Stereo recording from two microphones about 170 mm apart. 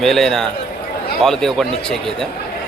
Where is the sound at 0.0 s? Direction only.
Centre (ahead or behind).